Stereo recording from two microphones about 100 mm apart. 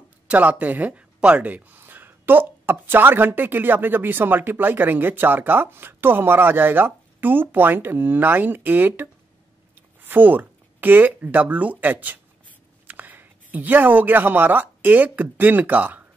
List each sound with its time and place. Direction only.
0.3 s speech: 15° right (ahead or behind)